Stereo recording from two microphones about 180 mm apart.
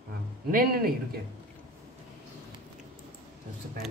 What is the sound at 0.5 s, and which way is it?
Speech, 55° right (ahead or behind).